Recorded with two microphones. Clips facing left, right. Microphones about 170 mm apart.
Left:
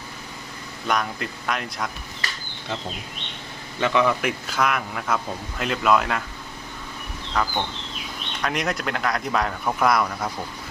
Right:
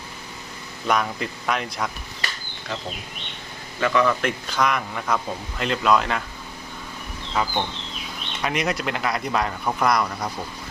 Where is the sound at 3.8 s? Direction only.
20° left (ahead or behind).